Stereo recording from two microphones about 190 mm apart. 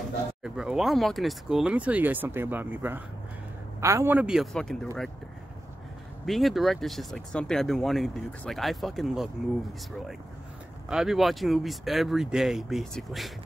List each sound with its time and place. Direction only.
0.4 s speech: 5° right (ahead or behind)
6.2 s speech: centre (ahead or behind)
10.9 s speech: centre (ahead or behind)